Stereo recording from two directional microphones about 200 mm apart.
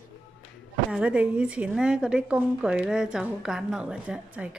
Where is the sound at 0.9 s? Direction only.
5° right (ahead or behind).